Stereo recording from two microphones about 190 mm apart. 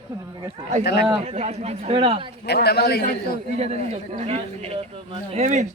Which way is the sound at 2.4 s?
55° left (ahead or behind).